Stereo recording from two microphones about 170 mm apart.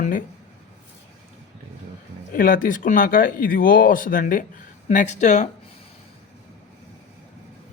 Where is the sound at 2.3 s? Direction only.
55° left (ahead or behind).